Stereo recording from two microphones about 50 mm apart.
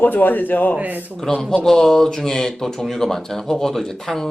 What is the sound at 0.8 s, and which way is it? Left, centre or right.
Speech, right.